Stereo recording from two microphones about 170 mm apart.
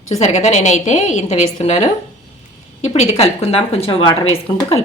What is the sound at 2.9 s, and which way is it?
A woman's voice, 40° left (ahead or behind).